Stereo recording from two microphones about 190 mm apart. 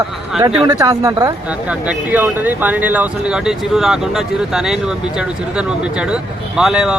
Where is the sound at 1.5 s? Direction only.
5° right (ahead or behind).